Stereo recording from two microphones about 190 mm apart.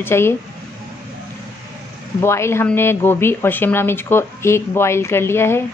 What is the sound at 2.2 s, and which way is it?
Speech, 15° left (ahead or behind).